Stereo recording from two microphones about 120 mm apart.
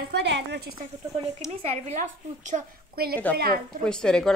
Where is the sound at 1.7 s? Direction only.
70° right (ahead or behind); by 2.7 s 90° right.